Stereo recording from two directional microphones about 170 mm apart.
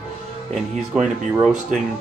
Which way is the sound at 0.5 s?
5° right (ahead or behind).